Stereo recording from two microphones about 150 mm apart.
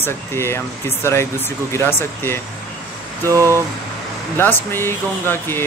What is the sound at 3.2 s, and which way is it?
Speech, 20° right (ahead or behind).